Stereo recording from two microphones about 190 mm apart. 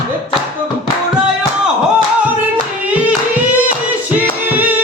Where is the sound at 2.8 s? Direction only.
10° right (ahead or behind).